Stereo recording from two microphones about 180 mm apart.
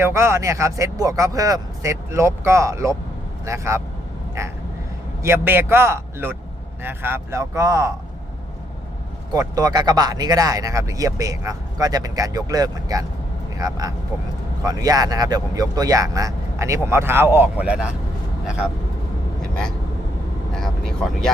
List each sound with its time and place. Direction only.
0.0 s speech: 15° right (ahead or behind)
5.2 s speech: 15° right (ahead or behind)
9.3 s speech: 20° right (ahead or behind)
19.4 s vehicle: 5° left (ahead or behind)
20.5 s speech: 5° left (ahead or behind)